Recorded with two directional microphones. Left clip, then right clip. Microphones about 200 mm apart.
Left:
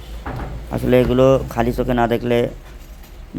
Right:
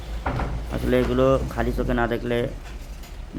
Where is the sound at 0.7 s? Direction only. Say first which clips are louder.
Left 7 dB; 30° left (ahead or behind).